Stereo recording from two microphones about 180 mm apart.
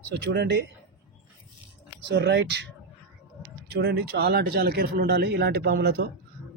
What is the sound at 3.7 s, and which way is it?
Speech, 65° right (ahead or behind).